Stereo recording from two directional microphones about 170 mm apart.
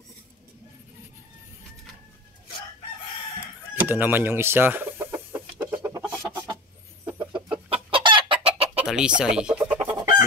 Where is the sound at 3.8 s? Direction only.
10° right (ahead or behind).